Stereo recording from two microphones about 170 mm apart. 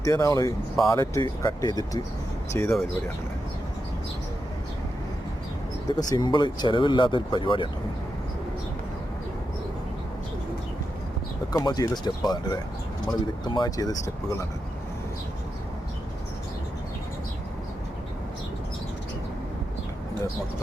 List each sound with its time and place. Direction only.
0.0 s speech: 20° left (ahead or behind)
5.9 s speech: 25° left (ahead or behind)
11.5 s speech: 25° left (ahead or behind)